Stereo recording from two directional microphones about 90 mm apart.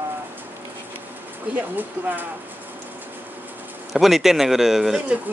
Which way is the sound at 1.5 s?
20° right (ahead or behind).